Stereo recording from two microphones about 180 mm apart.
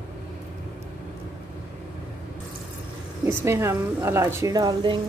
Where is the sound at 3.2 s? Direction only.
15° right (ahead or behind).